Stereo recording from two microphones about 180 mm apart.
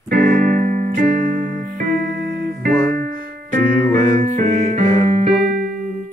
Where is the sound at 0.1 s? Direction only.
45° right (ahead or behind).